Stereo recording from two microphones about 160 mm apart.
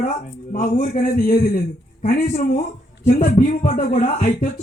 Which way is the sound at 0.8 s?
70° left (ahead or behind).